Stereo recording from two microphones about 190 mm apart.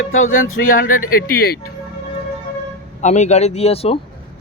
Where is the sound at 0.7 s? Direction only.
45° left (ahead or behind).